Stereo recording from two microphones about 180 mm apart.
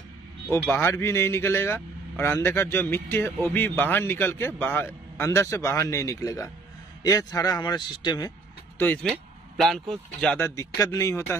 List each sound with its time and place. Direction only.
0.5 s a man's voice: 15° left (ahead or behind)
8.7 s a man's voice: 10° left (ahead or behind)